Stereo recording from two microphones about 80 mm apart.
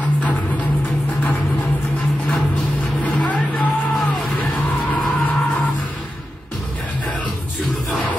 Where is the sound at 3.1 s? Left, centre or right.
Centre.